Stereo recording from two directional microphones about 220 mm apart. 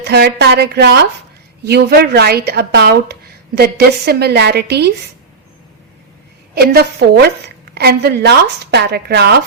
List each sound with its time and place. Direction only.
0.0 s a woman's voice: 50° right (ahead or behind)
6.5 s a woman's voice: 45° right (ahead or behind)